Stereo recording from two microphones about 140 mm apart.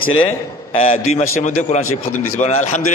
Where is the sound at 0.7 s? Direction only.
45° left (ahead or behind).